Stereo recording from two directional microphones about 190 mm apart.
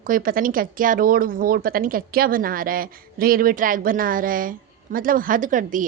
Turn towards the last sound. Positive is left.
turn(degrees=-45)  # may be behind; listen again after turning